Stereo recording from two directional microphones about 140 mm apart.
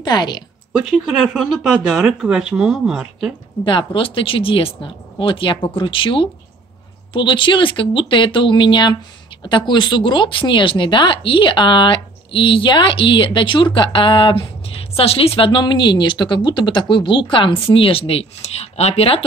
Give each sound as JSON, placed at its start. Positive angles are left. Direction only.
{"t": 0.0, "sound": "speech", "side_deg": 30}
{"t": 0.7, "sound": "speech", "side_deg": -5}
{"t": 3.6, "sound": "speech", "side_deg": 35}